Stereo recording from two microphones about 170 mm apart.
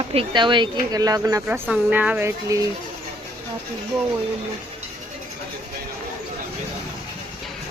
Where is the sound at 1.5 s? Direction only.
10° right (ahead or behind).